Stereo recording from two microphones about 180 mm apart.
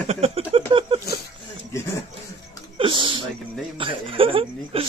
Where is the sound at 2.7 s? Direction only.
30° right (ahead or behind).